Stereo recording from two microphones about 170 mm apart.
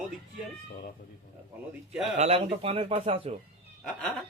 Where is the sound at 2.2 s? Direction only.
35° right (ahead or behind).